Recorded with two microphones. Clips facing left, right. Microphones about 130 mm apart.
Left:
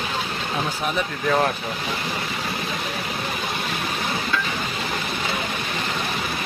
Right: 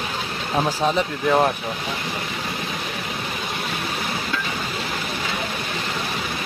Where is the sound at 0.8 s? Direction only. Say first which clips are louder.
Right 4 dB; 25° right (ahead or behind).